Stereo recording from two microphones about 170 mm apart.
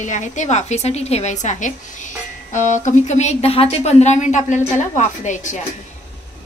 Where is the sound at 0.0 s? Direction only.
45° left (ahead or behind).